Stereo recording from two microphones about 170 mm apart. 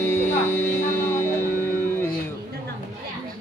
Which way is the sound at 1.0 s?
15° left (ahead or behind).